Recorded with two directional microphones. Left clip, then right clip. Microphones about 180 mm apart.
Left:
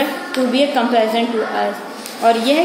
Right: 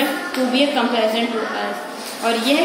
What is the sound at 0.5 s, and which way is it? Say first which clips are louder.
Speech: left 3 dB; 35° left (ahead or behind).